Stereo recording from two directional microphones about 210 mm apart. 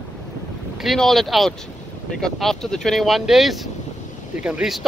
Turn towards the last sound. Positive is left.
turn(degrees=-5)  # may be behind; listen again after turning